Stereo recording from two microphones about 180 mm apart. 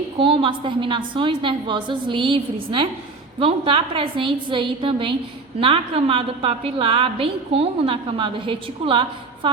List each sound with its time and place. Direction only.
0.2 s a woman's voice: 30° right (ahead or behind)